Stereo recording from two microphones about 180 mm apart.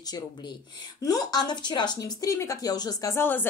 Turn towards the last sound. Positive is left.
turn(degrees=10)  # may be behind; listen again after turning